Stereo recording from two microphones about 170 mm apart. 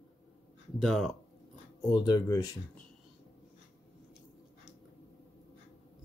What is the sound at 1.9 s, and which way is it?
Speech, 20° left (ahead or behind).